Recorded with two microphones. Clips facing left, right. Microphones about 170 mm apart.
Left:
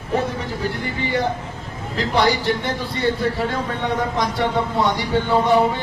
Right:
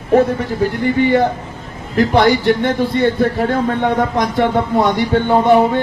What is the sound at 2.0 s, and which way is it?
A man's voice, 55° right (ahead or behind).